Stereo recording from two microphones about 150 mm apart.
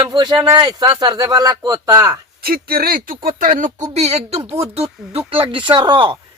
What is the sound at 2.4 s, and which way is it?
Speech, 85° right.